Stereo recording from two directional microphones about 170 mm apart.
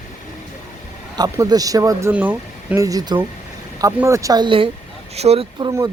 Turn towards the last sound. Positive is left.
turn(degrees=-20)  # may be behind; listen again after turning